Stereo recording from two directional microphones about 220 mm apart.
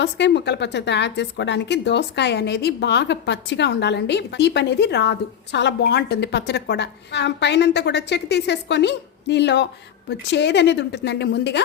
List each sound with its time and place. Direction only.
0.0 s a woman's voice: 50° left (ahead or behind)